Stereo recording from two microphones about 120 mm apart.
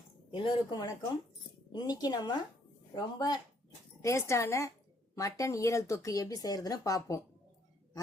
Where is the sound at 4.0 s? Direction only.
25° left (ahead or behind).